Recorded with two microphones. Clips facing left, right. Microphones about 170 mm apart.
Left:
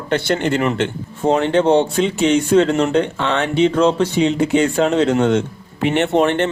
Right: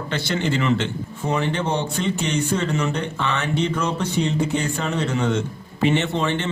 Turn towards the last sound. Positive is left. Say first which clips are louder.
# left 8 dB
turn(degrees=65)  # may be behind; listen again after turning